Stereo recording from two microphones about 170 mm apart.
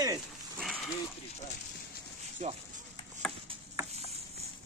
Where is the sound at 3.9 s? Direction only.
40° right (ahead or behind).